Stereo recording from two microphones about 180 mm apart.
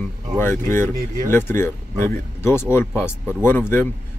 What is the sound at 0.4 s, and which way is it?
Speech, 15° left (ahead or behind).